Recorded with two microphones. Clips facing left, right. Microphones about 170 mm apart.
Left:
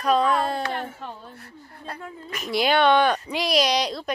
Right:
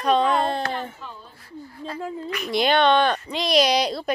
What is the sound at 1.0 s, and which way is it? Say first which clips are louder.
Speech: left 3 dB; 60° left (ahead or behind).